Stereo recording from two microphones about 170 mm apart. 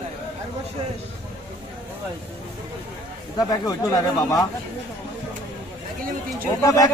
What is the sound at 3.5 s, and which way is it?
Speech, 20° left (ahead or behind).